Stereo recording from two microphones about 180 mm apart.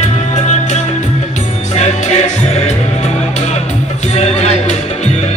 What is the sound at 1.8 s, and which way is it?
Music, 40° left (ahead or behind).